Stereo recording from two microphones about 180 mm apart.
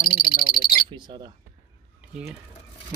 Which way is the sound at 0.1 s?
55° left (ahead or behind).